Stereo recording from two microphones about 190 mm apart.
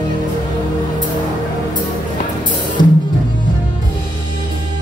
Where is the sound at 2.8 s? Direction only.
25° left (ahead or behind).